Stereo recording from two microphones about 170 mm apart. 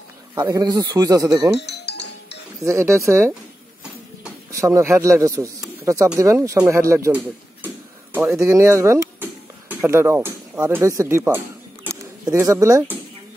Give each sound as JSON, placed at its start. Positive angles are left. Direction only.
{"t": 0.3, "sound": "speech", "side_deg": -20}
{"t": 1.7, "sound": "music", "side_deg": 75}
{"t": 2.6, "sound": "speech", "side_deg": -15}
{"t": 4.5, "sound": "speech", "side_deg": -20}
{"t": 7.6, "sound": "a sound", "side_deg": -10}
{"t": 8.5, "sound": "speech", "side_deg": -15}